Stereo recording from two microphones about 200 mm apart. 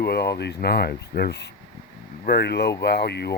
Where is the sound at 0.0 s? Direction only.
55° left (ahead or behind).